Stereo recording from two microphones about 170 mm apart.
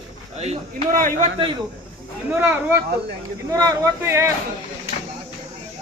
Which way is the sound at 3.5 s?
20° right (ahead or behind).